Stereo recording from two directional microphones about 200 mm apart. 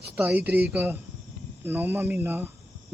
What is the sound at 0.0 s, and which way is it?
Speech, 10° right (ahead or behind).